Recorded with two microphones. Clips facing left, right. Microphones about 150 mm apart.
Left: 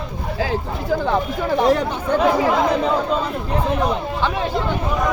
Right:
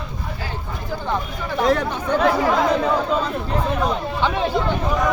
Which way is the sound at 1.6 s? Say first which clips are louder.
Even; 15° left (ahead or behind).